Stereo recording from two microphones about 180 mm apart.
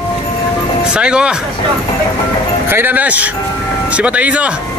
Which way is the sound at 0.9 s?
5° right (ahead or behind).